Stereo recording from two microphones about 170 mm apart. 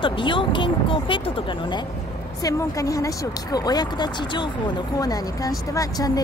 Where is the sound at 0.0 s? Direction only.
30° left (ahead or behind).